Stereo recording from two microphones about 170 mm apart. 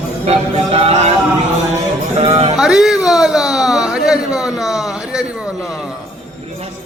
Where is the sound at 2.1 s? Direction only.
35° right (ahead or behind).